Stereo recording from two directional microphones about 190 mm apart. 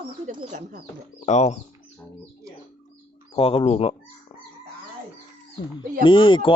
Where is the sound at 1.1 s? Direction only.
35° left (ahead or behind).